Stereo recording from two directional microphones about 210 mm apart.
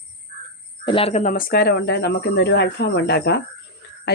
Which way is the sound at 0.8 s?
25° left (ahead or behind).